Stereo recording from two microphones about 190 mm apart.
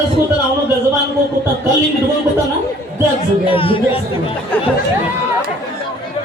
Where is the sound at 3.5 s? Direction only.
30° left (ahead or behind).